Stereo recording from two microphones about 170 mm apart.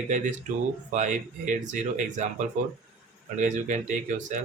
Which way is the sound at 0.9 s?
45° right (ahead or behind).